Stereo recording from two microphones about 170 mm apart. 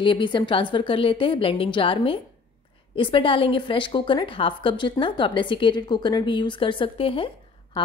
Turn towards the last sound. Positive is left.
turn(degrees=30)  # may be behind; listen again after turning